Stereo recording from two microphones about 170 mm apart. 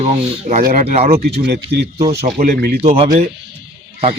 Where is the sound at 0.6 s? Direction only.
55° right (ahead or behind).